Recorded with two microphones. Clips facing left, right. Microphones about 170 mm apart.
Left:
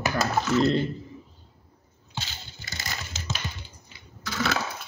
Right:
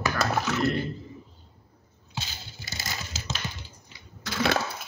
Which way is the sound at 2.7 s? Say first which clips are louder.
Even; centre (ahead or behind).